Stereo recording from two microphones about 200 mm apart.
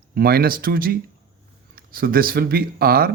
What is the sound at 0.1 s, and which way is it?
A man's voice, 50° right (ahead or behind).